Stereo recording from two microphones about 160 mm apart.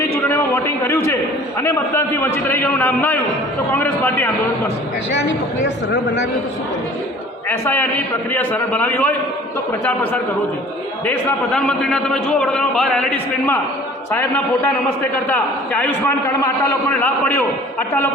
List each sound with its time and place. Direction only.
0.3 s a sound: 15° left (ahead or behind)
1.6 s a man's voice: 15° left (ahead or behind)
5.6 s speech: 90° left
8.3 s a man's voice: 10° left (ahead or behind)
11.5 s a man's voice: 5° left (ahead or behind)
17.7 s a man's voice: 10° left (ahead or behind)